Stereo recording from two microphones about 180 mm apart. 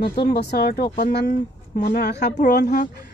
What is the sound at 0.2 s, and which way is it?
Speech, 65° left (ahead or behind).